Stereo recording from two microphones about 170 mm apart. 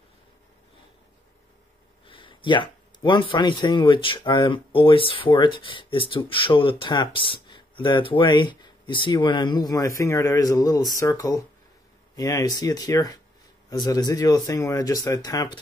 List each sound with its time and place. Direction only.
2.0 s speech: 30° left (ahead or behind)